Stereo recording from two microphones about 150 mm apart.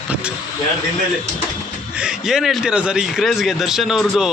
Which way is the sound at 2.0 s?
5° right (ahead or behind).